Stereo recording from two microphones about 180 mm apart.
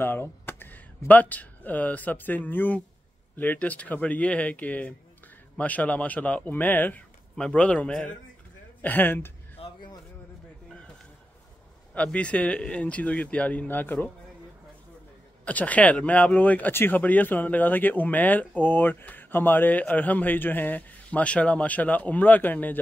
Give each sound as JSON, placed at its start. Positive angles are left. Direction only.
{"t": 0.0, "sound": "speech", "side_deg": 10}
{"t": 9.6, "sound": "a sound", "side_deg": 25}
{"t": 11.9, "sound": "speech", "side_deg": 5}
{"t": 15.4, "sound": "speech", "side_deg": 10}